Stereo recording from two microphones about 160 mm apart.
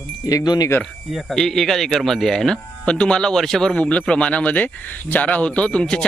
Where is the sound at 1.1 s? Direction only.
Centre (ahead or behind).